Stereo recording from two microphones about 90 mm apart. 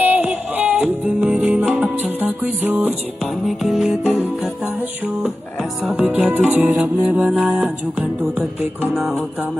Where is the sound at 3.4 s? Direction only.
5° right (ahead or behind).